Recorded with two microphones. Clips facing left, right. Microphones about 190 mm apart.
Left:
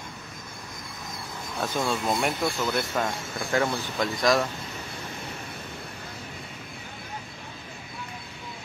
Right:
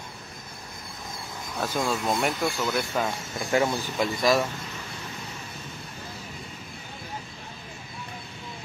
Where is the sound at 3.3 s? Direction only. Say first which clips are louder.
Right 2 dB; 15° right (ahead or behind).